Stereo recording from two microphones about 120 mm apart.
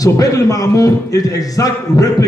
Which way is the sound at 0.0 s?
30° left (ahead or behind).